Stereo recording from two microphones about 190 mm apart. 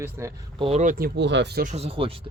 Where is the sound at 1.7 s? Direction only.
30° right (ahead or behind).